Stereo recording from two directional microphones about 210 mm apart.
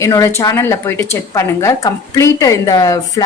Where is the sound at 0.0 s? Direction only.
15° left (ahead or behind).